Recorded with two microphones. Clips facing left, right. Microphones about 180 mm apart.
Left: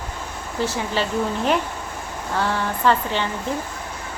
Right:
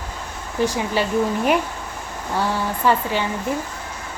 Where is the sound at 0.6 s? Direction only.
15° right (ahead or behind).